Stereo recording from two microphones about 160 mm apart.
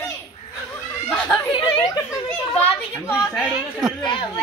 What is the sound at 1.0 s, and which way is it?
Speech, 5° left (ahead or behind).